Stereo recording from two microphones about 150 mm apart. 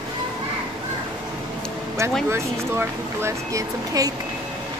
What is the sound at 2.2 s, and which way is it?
Speech, 15° right (ahead or behind).